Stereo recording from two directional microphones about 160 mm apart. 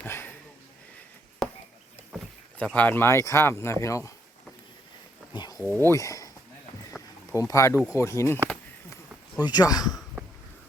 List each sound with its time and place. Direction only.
0.0 s sniff: 10° left (ahead or behind)
1.4 s a sound: centre (ahead or behind)
2.7 s speech: 10° left (ahead or behind)
5.3 s speech: 25° left (ahead or behind)
7.0 s a sound: centre (ahead or behind)
7.3 s speech: 20° left (ahead or behind)
9.5 s speech: 25° left (ahead or behind)